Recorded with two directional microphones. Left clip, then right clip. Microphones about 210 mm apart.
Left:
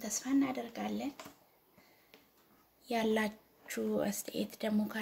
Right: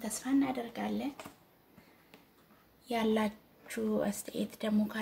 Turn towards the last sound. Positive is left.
turn(degrees=25)  # may be behind; listen again after turning